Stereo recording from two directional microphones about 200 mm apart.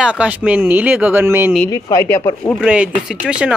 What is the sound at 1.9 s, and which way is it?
Speech, 15° left (ahead or behind).